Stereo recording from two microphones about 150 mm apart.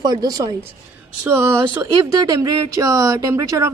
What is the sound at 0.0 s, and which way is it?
Speech, 25° right (ahead or behind).